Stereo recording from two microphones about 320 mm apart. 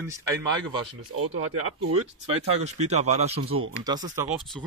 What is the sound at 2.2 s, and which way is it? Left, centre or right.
Speech, centre.